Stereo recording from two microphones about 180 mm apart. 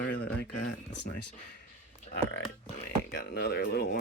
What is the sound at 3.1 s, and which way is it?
Speech, 65° left (ahead or behind).